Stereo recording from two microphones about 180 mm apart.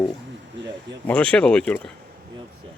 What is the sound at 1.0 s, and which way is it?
Speech, 5° left (ahead or behind).